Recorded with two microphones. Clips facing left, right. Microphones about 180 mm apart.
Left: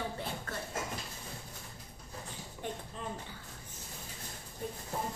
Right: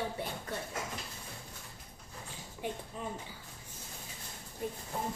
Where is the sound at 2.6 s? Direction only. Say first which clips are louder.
Right 2 dB; 10° right (ahead or behind).